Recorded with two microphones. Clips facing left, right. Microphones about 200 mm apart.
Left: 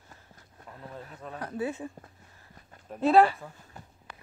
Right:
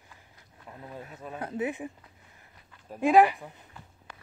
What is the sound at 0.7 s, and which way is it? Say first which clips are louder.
Speech: right 1 dB; 15° right (ahead or behind).